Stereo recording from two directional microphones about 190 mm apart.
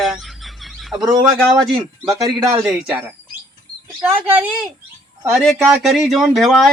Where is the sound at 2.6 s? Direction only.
5° right (ahead or behind).